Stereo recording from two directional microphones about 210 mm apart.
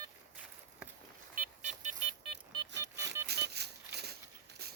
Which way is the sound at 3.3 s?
50° right (ahead or behind).